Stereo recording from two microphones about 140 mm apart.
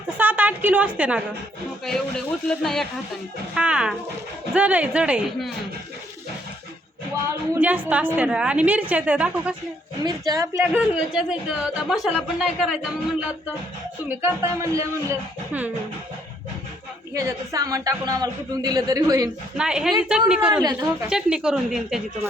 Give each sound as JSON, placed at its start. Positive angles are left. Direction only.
{"t": 0.2, "sound": "a sound", "side_deg": -10}
{"t": 1.8, "sound": "a woman's voice", "side_deg": 0}
{"t": 3.5, "sound": "a woman's voice", "side_deg": -5}
{"t": 7.3, "sound": "a woman's voice", "side_deg": -15}
{"t": 10.0, "sound": "speech", "side_deg": -30}
{"t": 10.8, "sound": "a woman's voice", "side_deg": -5}
{"t": 14.2, "sound": "speech", "side_deg": -20}
{"t": 17.2, "sound": "speech", "side_deg": -25}
{"t": 19.5, "sound": "a woman's voice", "side_deg": -5}